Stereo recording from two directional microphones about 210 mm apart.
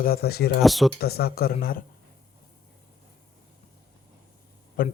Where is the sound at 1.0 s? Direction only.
50° left (ahead or behind).